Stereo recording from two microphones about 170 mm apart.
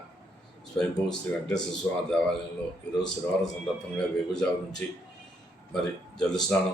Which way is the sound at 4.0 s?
5° left (ahead or behind).